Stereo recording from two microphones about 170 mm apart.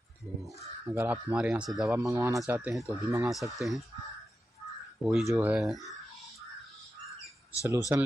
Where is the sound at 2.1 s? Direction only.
20° right (ahead or behind).